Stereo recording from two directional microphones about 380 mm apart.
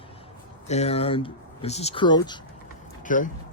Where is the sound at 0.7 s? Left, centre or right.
Centre.